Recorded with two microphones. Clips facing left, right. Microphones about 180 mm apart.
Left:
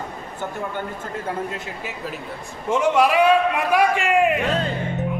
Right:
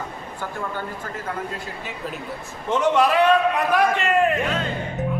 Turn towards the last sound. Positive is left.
turn(degrees=10)  # may be behind; listen again after turning